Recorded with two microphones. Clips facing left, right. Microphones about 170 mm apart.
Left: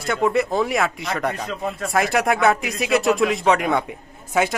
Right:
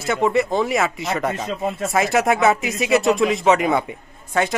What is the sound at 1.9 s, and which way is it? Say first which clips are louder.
Speech: right 1 dB; centre (ahead or behind).